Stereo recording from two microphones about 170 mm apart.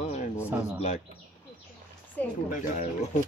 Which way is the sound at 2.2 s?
10° left (ahead or behind).